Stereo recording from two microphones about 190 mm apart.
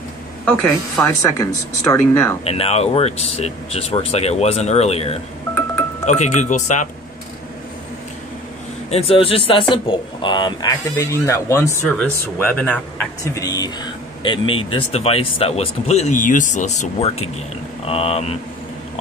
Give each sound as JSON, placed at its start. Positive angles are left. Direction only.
{"t": 0.5, "sound": "speech", "side_deg": 10}
{"t": 2.4, "sound": "speech", "side_deg": 30}
{"t": 8.9, "sound": "speech", "side_deg": 30}